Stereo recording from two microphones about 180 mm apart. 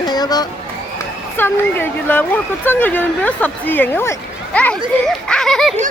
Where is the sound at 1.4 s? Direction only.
10° left (ahead or behind).